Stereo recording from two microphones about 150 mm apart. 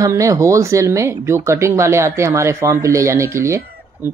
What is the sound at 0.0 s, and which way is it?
Speech, 20° right (ahead or behind).